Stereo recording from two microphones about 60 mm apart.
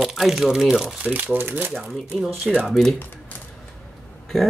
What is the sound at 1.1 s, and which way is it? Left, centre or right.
Speech, right.